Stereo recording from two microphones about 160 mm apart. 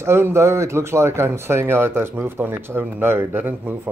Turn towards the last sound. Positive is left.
turn(degrees=-15)  # may be behind; listen again after turning